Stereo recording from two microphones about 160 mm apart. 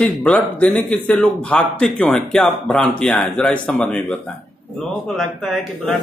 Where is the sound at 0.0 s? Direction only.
5° left (ahead or behind).